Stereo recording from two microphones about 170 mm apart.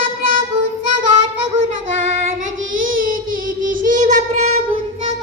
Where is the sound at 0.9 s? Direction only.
45° right (ahead or behind).